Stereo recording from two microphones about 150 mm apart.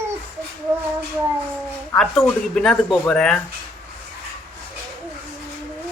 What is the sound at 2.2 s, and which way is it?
Speech, 5° left (ahead or behind).